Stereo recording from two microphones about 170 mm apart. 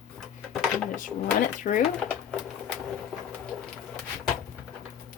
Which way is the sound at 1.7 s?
50° left (ahead or behind).